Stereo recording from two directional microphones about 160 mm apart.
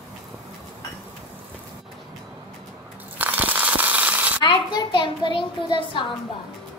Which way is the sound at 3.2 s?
10° right (ahead or behind).